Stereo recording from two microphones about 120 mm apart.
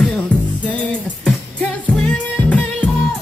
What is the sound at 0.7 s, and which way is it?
Music, 10° left (ahead or behind).